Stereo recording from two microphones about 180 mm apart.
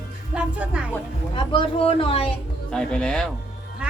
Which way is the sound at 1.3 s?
30° left (ahead or behind).